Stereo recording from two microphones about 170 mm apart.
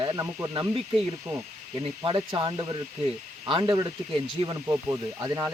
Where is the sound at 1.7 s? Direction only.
30° right (ahead or behind).